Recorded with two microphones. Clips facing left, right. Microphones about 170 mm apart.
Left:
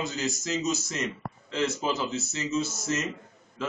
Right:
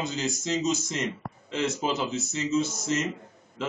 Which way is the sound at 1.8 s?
20° right (ahead or behind).